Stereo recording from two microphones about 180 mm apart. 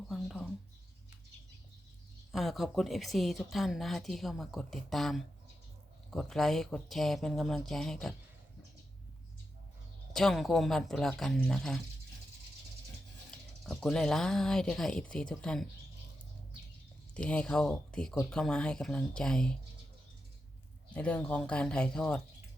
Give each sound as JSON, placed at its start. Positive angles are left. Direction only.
{"t": 0.1, "sound": "mouse", "side_deg": 0}
{"t": 2.3, "sound": "a woman's voice", "side_deg": 0}
{"t": 10.1, "sound": "a woman's voice", "side_deg": 0}
{"t": 13.7, "sound": "a woman's voice", "side_deg": 5}
{"t": 17.2, "sound": "a woman's voice", "side_deg": 5}
{"t": 20.9, "sound": "speech", "side_deg": 5}